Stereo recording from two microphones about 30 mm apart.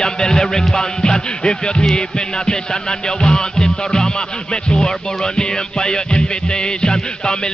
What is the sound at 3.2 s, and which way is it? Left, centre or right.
Speech, left.